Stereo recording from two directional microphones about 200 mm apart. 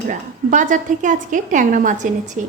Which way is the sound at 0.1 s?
40° right (ahead or behind).